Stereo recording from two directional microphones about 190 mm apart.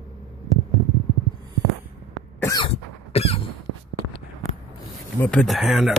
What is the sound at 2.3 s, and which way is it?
Cough, 15° left (ahead or behind).